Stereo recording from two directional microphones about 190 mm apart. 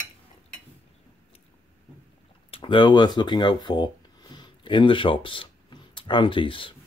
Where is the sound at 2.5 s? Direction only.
25° left (ahead or behind).